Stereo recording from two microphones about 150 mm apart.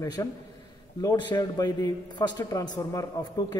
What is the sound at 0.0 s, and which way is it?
A man's voice, 25° left (ahead or behind).